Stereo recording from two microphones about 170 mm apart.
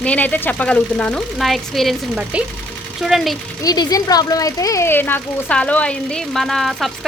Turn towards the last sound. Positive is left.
turn(degrees=0)  # may be behind; listen again after turning